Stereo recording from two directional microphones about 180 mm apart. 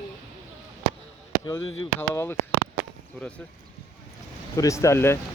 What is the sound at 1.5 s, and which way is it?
Speech, 15° left (ahead or behind).